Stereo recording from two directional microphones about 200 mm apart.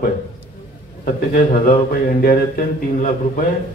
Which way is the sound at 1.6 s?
45° left (ahead or behind).